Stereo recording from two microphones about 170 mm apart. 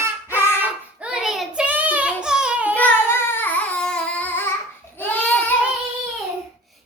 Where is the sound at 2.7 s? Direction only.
10° left (ahead or behind).